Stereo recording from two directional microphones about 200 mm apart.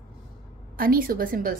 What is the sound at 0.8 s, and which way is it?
Speech, 45° right (ahead or behind).